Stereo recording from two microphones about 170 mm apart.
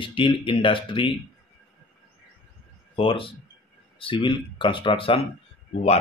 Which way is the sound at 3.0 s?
30° left (ahead or behind).